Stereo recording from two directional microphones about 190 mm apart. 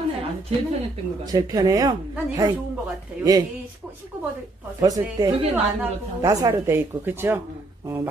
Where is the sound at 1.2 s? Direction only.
20° right (ahead or behind).